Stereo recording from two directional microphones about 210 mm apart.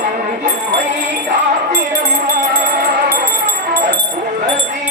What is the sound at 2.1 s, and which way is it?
Music, 40° right (ahead or behind).